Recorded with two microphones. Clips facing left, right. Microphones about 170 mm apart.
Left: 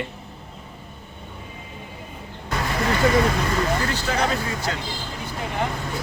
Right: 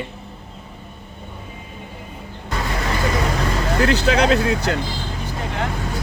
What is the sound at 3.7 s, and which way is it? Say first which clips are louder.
Speech: right 7 dB; 75° right (ahead or behind).